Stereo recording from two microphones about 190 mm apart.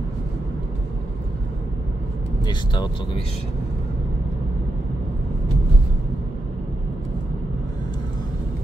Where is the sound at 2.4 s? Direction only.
25° left (ahead or behind).